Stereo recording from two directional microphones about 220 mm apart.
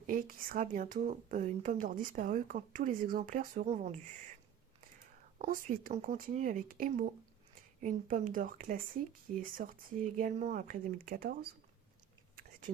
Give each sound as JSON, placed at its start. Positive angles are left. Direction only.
{"t": 0.1, "sound": "speech", "side_deg": -40}
{"t": 5.4, "sound": "speech", "side_deg": -40}